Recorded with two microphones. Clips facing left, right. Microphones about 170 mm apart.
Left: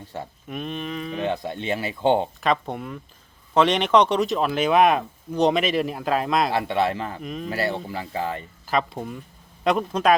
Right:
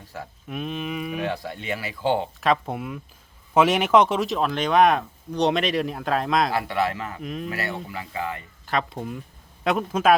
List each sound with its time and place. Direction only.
0.0 s speech: 25° left (ahead or behind)
0.4 s speech: centre (ahead or behind)
1.2 s speech: 25° left (ahead or behind)
2.4 s speech: centre (ahead or behind)
6.5 s speech: 25° left (ahead or behind)
7.2 s speech: centre (ahead or behind)
7.4 s speech: 30° left (ahead or behind)
8.6 s speech: centre (ahead or behind)